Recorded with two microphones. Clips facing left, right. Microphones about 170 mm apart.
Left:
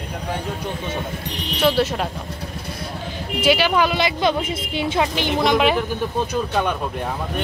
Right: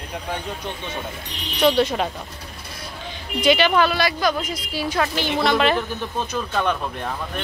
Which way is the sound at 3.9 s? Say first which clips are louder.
Left 2 dB; 25° left (ahead or behind).